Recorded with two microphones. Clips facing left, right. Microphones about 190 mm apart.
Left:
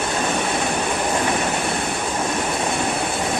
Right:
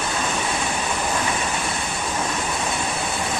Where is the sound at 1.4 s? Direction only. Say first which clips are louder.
Left 4 dB; 60° left (ahead or behind).